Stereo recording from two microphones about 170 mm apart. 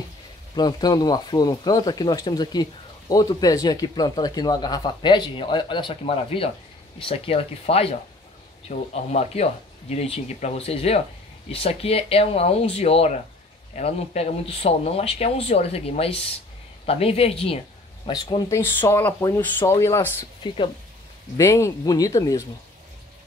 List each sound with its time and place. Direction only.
0.6 s speech: 25° left (ahead or behind)
21.4 s speech: 15° left (ahead or behind)